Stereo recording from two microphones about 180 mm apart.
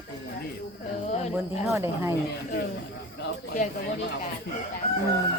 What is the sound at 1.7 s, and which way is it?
Speech, 15° right (ahead or behind).